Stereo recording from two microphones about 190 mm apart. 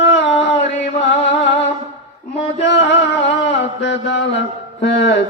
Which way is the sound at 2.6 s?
70° left (ahead or behind).